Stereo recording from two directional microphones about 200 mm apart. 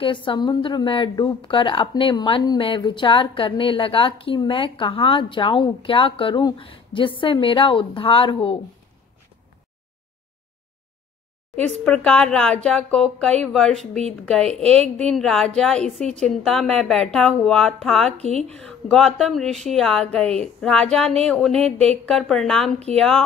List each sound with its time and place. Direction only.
0.0 s a woman's voice: 25° left (ahead or behind)
11.5 s speech: 5° left (ahead or behind)